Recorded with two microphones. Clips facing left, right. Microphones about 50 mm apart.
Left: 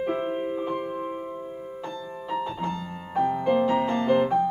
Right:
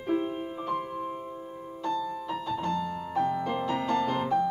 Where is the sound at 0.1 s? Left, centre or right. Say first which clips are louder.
Left 2 dB; left.